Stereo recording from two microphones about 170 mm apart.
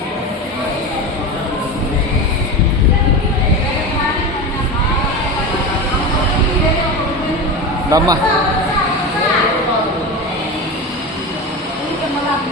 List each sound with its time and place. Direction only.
7.9 s speech: 20° right (ahead or behind)